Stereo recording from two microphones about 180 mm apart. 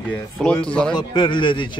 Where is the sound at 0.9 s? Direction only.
25° left (ahead or behind).